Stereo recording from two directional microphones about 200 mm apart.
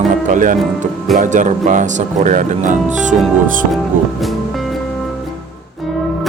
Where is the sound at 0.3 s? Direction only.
40° right (ahead or behind).